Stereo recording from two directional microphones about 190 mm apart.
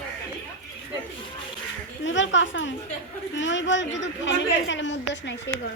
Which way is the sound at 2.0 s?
80° left.